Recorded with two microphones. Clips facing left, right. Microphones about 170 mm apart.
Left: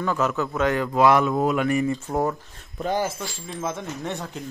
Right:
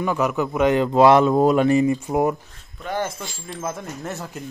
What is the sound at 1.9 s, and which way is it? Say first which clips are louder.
Speech: right 4 dB; 15° right (ahead or behind).